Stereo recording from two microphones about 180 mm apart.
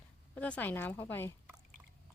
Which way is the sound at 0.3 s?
5° left (ahead or behind).